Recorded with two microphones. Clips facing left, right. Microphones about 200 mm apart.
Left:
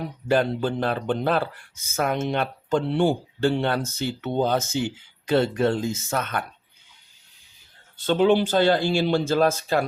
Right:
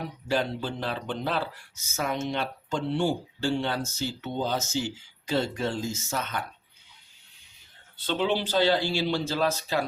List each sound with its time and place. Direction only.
0.3 s speech: 55° left (ahead or behind)
7.9 s speech: 45° left (ahead or behind)